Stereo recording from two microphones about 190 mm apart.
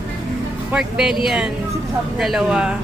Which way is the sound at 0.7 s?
5° right (ahead or behind).